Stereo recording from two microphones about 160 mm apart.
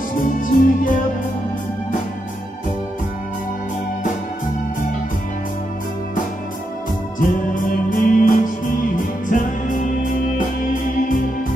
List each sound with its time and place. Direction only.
0.2 s music: 60° left (ahead or behind)
7.2 s music: 55° left (ahead or behind)